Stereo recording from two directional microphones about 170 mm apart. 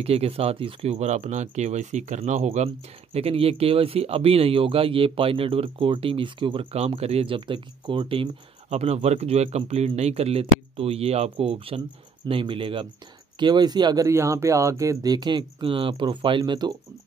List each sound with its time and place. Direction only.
0.0 s speech: 35° right (ahead or behind)